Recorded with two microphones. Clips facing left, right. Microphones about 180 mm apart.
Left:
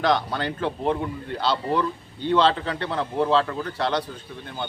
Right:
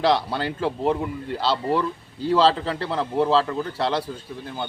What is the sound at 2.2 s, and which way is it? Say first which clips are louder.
Speech: right 1 dB; 30° right (ahead or behind).